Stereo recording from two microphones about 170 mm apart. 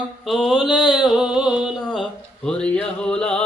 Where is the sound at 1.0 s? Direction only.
5° right (ahead or behind).